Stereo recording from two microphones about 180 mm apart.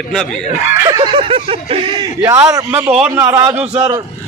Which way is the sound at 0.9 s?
25° right (ahead or behind).